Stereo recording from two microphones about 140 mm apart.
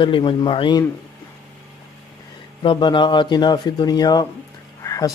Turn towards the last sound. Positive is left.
turn(degrees=25)  # may be behind; listen again after turning